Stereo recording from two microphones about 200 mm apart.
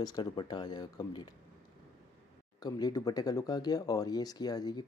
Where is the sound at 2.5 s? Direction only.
20° left (ahead or behind).